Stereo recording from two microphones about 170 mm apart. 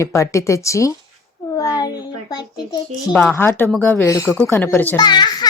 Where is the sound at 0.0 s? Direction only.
20° left (ahead or behind).